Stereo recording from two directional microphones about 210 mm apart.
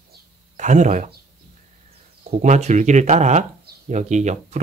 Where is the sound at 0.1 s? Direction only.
35° right (ahead or behind).